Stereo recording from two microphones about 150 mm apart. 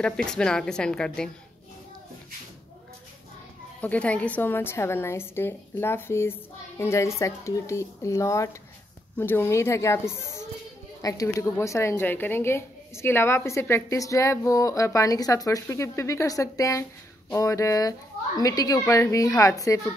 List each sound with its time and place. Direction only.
0.0 s a woman's voice: 5° left (ahead or behind)
3.8 s a woman's voice: 10° left (ahead or behind)